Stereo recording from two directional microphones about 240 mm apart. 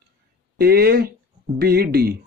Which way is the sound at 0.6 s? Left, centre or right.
Right.